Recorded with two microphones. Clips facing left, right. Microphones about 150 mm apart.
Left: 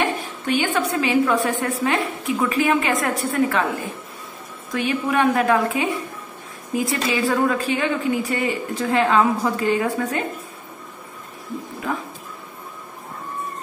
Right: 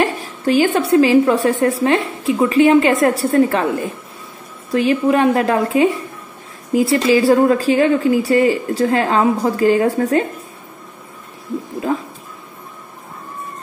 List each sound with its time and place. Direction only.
0.5 s a woman's voice: 35° right (ahead or behind)
4.6 s a woman's voice: 30° right (ahead or behind)